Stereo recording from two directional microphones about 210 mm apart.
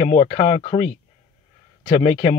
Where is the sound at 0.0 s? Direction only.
30° left (ahead or behind).